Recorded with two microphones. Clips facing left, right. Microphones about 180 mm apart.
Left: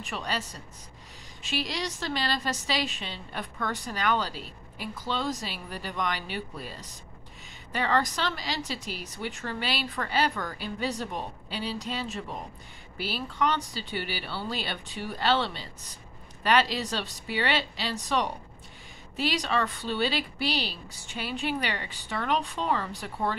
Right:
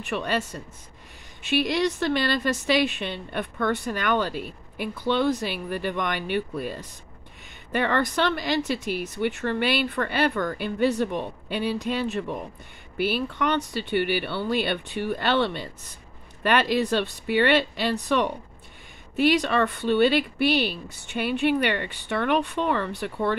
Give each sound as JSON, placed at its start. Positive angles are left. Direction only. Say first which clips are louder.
{"t": 0.0, "sound": "a woman's voice", "louder": "right 7 dB", "side_deg": -60}